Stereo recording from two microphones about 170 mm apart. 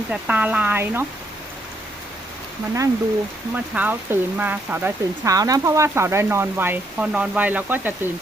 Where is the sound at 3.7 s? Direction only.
10° right (ahead or behind).